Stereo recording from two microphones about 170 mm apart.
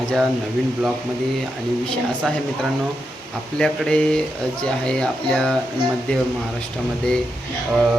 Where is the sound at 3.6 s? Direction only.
5° left (ahead or behind).